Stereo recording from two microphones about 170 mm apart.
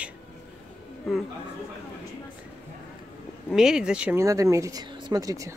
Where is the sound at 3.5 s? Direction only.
5° right (ahead or behind); by 5.5 s 20° right (ahead or behind).